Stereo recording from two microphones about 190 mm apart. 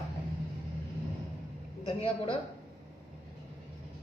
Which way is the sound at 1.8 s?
30° left (ahead or behind).